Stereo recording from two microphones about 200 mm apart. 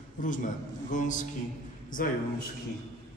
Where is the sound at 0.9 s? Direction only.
40° left (ahead or behind).